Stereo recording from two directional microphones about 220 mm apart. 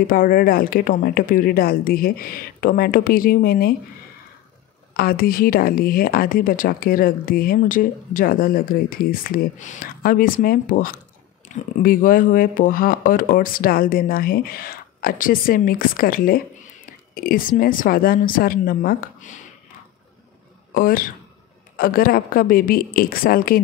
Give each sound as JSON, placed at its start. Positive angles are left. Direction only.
{"t": 0.0, "sound": "a woman's voice", "side_deg": 40}
{"t": 4.9, "sound": "a woman's voice", "side_deg": 40}
{"t": 20.7, "sound": "a woman's voice", "side_deg": 40}